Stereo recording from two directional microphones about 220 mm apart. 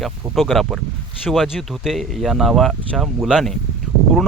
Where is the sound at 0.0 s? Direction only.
Centre (ahead or behind).